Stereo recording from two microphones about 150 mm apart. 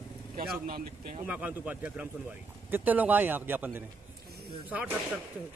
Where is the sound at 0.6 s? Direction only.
80° right.